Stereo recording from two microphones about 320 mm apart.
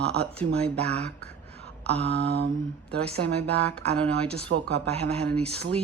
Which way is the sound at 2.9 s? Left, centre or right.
Centre.